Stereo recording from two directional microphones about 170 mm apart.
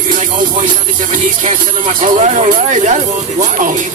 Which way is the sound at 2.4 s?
50° right (ahead or behind).